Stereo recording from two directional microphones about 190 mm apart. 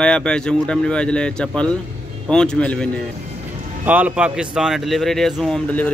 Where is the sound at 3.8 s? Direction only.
10° right (ahead or behind).